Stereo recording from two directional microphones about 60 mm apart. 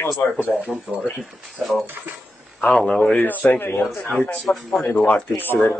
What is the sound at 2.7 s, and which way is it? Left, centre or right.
Speech, centre.